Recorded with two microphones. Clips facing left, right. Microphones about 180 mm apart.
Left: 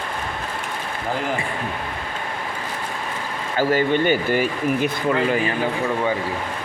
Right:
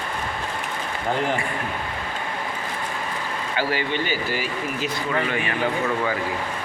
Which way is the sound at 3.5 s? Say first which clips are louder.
Left 7 dB; 50° left (ahead or behind).